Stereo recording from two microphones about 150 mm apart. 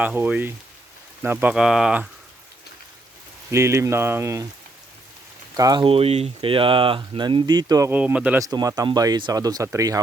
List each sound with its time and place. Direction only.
0.0 s speech: 10° right (ahead or behind)
3.5 s speech: 20° right (ahead or behind)
5.5 s speech: 25° right (ahead or behind)
5.8 s speech: 40° right (ahead or behind)
7.9 s speech: 10° right (ahead or behind)
8.4 s speech: 25° right (ahead or behind)